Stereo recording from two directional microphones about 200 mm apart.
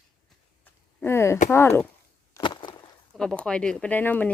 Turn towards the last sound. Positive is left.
turn(degrees=10)  # may be behind; listen again after turning